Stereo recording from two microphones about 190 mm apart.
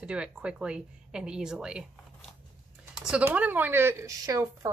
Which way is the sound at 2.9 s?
5° right (ahead or behind).